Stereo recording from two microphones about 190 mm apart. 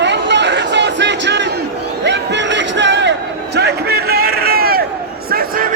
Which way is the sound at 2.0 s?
70° right (ahead or behind).